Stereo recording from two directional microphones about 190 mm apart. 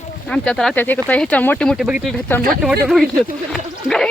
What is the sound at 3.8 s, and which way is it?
Speech, centre (ahead or behind).